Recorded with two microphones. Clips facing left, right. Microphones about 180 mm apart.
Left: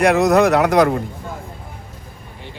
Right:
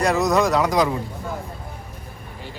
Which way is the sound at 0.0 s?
60° left (ahead or behind).